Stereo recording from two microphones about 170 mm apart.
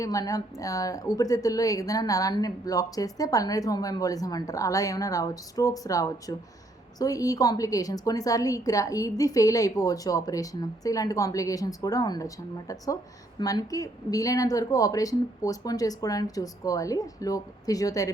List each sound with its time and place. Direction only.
0.0 s a woman's voice: 20° left (ahead or behind)